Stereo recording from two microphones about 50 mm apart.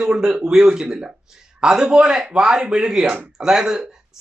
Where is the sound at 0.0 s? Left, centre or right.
Centre.